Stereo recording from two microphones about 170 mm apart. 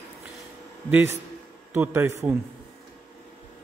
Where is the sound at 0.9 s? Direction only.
15° right (ahead or behind).